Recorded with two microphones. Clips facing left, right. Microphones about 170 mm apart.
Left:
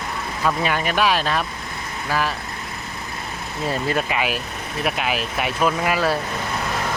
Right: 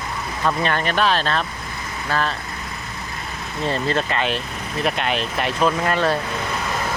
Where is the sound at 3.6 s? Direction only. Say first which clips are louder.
Right 1 dB; 10° left (ahead or behind).